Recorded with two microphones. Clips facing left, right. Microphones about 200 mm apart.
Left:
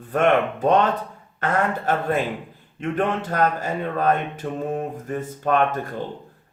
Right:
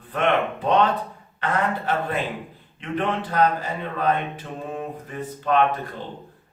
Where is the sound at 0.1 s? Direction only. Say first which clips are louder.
Left 3 dB; 45° left (ahead or behind).